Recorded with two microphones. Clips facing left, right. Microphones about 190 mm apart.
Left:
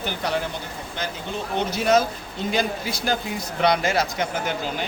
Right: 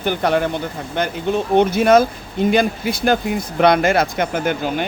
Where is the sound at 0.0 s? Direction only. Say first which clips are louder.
Right 8 dB; 55° right (ahead or behind).